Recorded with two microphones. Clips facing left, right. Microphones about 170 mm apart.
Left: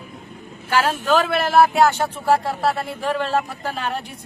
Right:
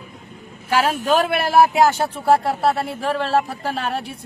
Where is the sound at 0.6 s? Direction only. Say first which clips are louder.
Right 1 dB; 35° right (ahead or behind).